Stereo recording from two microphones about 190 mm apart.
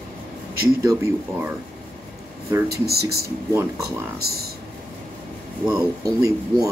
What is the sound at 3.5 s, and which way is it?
Speech, 15° right (ahead or behind).